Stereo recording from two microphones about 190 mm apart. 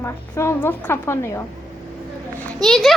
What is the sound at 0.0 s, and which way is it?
Speech, 15° left (ahead or behind).